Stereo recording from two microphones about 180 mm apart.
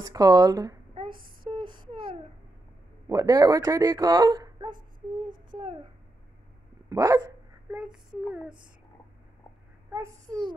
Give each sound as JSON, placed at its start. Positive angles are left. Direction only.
{"t": 0.0, "sound": "a sound", "side_deg": -20}
{"t": 3.1, "sound": "speech", "side_deg": -20}
{"t": 5.5, "sound": "babbling", "side_deg": -25}
{"t": 6.9, "sound": "dog", "side_deg": -20}
{"t": 8.3, "sound": "a child's voice", "side_deg": -5}
{"t": 9.9, "sound": "a child's voice", "side_deg": -15}